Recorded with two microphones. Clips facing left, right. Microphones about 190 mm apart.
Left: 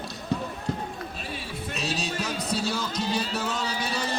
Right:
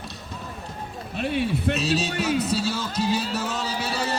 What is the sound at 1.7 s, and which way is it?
Speech, centre (ahead or behind).